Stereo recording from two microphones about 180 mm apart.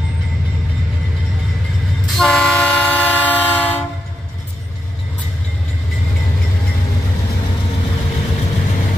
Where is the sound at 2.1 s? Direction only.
5° left (ahead or behind).